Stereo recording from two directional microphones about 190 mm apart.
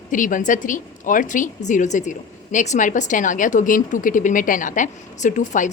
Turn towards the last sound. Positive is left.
turn(degrees=40)  # may be behind; listen again after turning